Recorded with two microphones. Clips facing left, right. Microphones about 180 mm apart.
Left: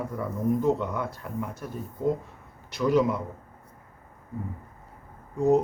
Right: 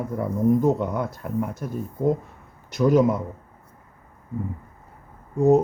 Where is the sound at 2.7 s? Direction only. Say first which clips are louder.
Right 5 dB; 45° right (ahead or behind).